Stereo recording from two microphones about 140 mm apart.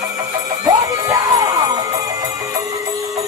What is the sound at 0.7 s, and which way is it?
Music, 25° right (ahead or behind).